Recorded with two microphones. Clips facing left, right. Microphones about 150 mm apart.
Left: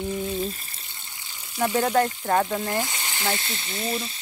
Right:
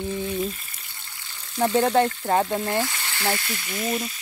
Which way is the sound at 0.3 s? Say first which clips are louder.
Right 1 dB; 30° left (ahead or behind).